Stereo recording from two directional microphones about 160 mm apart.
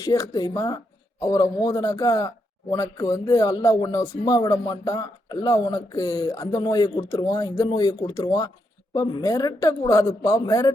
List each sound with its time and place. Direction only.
0.0 s a man's voice: 20° left (ahead or behind)